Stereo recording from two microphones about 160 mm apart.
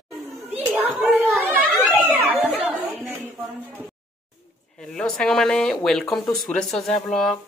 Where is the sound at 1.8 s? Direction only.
10° right (ahead or behind).